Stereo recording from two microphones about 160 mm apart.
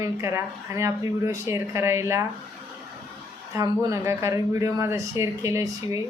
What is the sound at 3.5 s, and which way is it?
Speech, 20° right (ahead or behind).